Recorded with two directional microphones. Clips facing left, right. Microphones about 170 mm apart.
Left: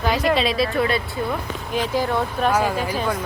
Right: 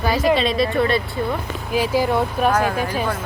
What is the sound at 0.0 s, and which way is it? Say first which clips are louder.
Speech: right 2 dB; centre (ahead or behind).